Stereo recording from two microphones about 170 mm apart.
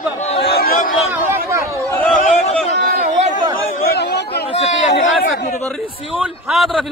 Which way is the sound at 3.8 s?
75° left (ahead or behind).